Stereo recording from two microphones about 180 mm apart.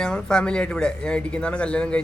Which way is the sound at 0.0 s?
5° left (ahead or behind).